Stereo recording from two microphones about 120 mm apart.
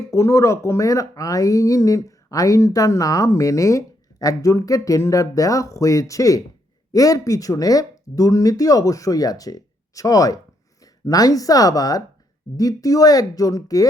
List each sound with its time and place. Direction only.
0.1 s speech: 25° left (ahead or behind)